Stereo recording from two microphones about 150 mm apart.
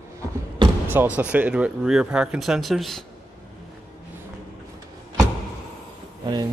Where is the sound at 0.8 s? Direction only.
10° right (ahead or behind).